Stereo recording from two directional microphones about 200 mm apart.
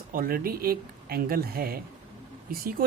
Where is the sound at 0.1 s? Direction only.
45° right (ahead or behind).